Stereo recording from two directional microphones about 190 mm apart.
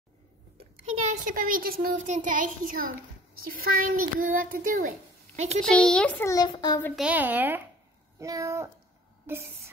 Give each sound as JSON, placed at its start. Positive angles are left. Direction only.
{"t": 1.1, "sound": "a child's voice", "side_deg": -45}
{"t": 5.6, "sound": "a child's voice", "side_deg": 5}
{"t": 7.0, "sound": "a woman's voice", "side_deg": -10}
{"t": 9.2, "sound": "a sound", "side_deg": -10}